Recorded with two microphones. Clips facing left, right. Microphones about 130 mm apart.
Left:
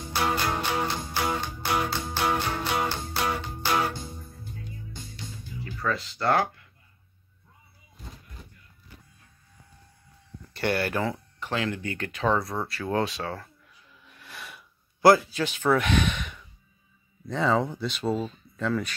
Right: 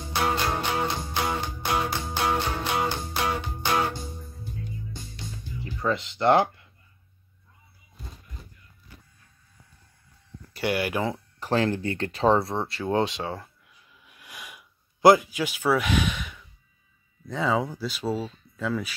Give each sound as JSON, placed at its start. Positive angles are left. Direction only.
{"t": 0.1, "sound": "music", "side_deg": -20}
{"t": 5.6, "sound": "speech", "side_deg": -25}
{"t": 10.5, "sound": "speech", "side_deg": -10}
{"t": 11.3, "sound": "speech", "side_deg": -40}
{"t": 14.0, "sound": "sniff", "side_deg": -10}
{"t": 17.3, "sound": "speech", "side_deg": -5}